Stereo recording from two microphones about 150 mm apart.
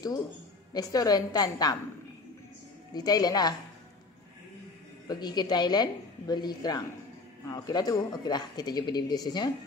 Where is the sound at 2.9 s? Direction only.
25° left (ahead or behind).